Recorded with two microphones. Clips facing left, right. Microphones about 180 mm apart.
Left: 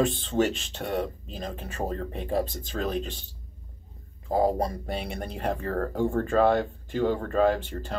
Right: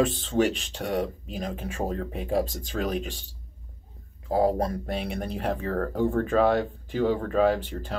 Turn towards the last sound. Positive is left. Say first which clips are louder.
# right 1 dB
turn(degrees=-5)  # may be behind; listen again after turning